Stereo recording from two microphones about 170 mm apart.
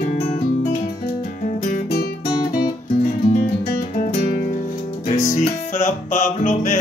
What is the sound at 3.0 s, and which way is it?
Music, 55° left (ahead or behind).